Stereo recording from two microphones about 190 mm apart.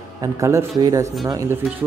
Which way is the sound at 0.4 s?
15° right (ahead or behind).